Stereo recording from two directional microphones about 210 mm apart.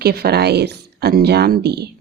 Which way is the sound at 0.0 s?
50° right (ahead or behind).